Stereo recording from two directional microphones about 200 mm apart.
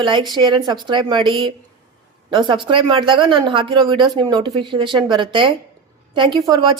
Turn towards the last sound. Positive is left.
turn(degrees=-20)  # may be behind; listen again after turning